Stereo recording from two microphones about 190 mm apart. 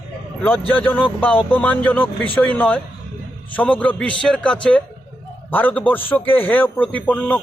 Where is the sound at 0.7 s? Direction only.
10° left (ahead or behind).